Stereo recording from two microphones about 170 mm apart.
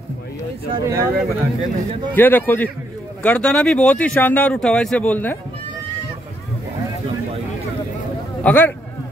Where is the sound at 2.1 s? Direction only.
10° left (ahead or behind).